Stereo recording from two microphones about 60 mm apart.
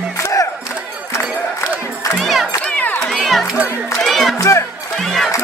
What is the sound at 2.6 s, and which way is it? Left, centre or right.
Crowd, left.